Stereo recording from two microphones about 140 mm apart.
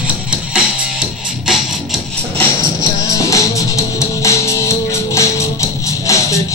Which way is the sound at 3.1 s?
25° left (ahead or behind).